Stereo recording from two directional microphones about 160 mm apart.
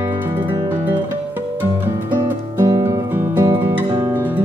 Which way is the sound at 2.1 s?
15° right (ahead or behind).